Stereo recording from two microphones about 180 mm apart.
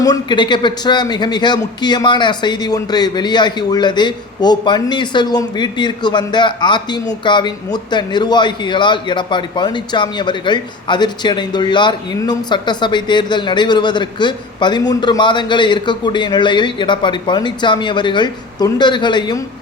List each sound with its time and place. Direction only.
0.0 s a man's voice: 25° left (ahead or behind)